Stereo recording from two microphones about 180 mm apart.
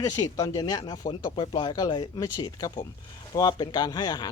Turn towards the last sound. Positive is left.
turn(degrees=25)  # may be behind; listen again after turning